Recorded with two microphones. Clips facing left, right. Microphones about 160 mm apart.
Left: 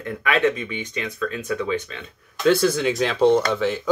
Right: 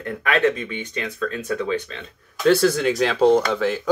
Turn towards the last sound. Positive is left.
turn(degrees=-45)  # may be behind; listen again after turning